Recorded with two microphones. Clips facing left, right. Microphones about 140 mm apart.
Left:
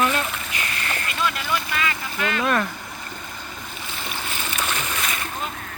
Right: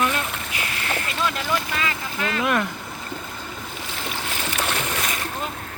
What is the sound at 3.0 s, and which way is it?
Boat, 30° right (ahead or behind).